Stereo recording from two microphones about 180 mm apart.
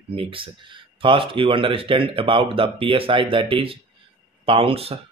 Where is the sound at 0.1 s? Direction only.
30° right (ahead or behind).